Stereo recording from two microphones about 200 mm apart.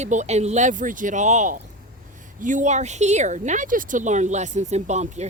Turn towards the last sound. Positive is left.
turn(degrees=-35)  # may be behind; listen again after turning